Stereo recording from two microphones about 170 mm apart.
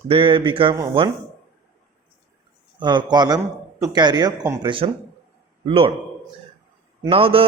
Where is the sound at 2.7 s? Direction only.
25° right (ahead or behind).